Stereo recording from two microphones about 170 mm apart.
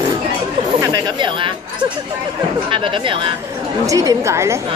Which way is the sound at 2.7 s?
30° right (ahead or behind).